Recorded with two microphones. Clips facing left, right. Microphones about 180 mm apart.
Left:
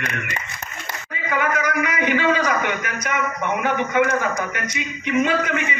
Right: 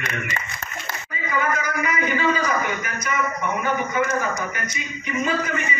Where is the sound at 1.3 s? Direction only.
75° left (ahead or behind).